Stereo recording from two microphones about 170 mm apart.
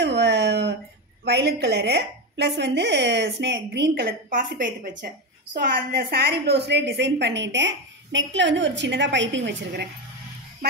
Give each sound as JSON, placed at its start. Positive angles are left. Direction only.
{"t": 0.0, "sound": "a sound", "side_deg": -90}
{"t": 1.2, "sound": "a woman's voice", "side_deg": -75}
{"t": 10.6, "sound": "speech", "side_deg": -60}